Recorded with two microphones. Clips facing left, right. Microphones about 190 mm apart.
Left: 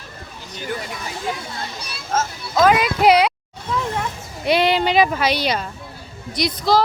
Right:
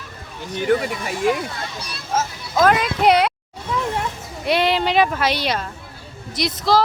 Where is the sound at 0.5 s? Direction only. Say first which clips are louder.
Right 10 dB; 60° right (ahead or behind).